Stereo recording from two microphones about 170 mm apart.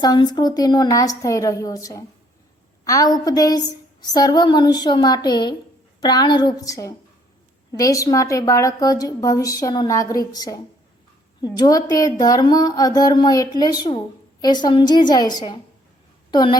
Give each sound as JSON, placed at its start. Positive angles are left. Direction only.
{"t": 0.0, "sound": "a woman's voice", "side_deg": 25}